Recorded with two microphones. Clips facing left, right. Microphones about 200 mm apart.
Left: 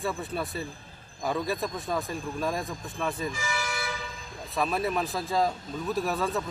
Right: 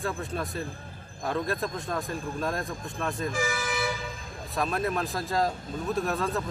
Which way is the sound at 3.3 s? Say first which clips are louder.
Right 3 dB; 50° right (ahead or behind).